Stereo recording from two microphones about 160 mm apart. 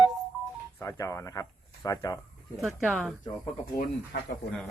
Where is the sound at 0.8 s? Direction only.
20° left (ahead or behind).